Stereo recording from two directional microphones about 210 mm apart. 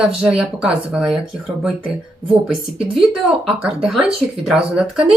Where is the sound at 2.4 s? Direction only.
Centre (ahead or behind).